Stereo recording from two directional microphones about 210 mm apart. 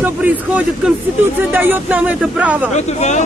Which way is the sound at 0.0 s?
10° right (ahead or behind).